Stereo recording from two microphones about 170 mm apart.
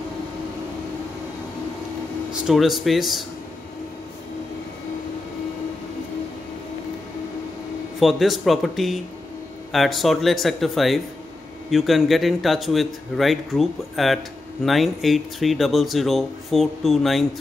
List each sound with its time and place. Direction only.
2.4 s speech: centre (ahead or behind)
8.0 s speech: centre (ahead or behind)